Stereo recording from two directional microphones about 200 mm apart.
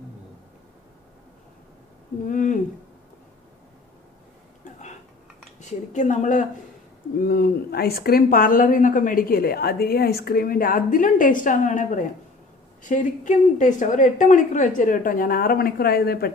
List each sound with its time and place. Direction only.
2.2 s a sound: 40° left (ahead or behind)
5.6 s a woman's voice: 35° left (ahead or behind)
7.2 s a woman's voice: 50° left (ahead or behind)